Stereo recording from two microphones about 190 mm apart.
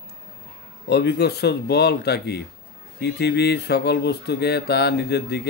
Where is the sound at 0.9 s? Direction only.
60° left (ahead or behind).